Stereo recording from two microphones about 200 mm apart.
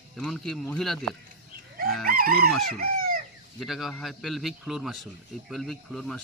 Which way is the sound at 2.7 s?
45° right (ahead or behind).